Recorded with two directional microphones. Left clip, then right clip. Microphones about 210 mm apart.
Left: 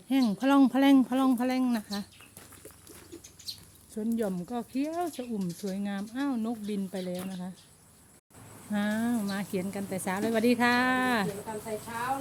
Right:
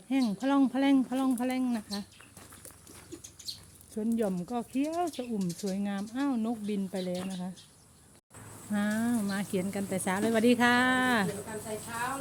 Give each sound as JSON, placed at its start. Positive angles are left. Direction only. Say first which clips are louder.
{"t": 0.1, "sound": "speech", "louder": "left 3 dB", "side_deg": 20}
{"t": 3.1, "sound": "bird", "louder": "right 2 dB", "side_deg": -10}
{"t": 3.9, "sound": "speech", "louder": "even", "side_deg": -5}
{"t": 8.7, "sound": "speech", "louder": "left 1 dB", "side_deg": 0}